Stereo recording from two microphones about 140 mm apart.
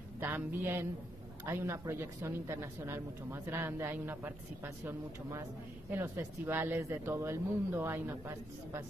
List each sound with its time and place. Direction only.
0.2 s speech: 15° right (ahead or behind)
5.9 s speech: 15° right (ahead or behind)